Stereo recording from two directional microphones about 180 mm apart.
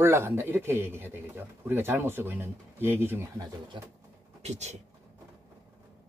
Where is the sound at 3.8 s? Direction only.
25° right (ahead or behind).